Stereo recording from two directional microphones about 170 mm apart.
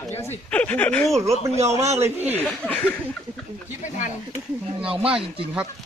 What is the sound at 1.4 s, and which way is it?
Speech, 40° right (ahead or behind).